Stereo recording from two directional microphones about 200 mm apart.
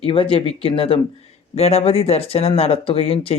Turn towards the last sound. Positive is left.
turn(degrees=30)  # may be behind; listen again after turning